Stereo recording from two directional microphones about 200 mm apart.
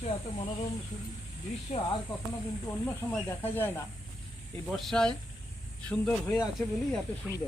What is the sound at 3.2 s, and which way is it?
Speech, 10° left (ahead or behind).